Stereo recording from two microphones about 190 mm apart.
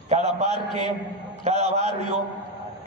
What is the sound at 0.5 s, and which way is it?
Speech, 25° left (ahead or behind).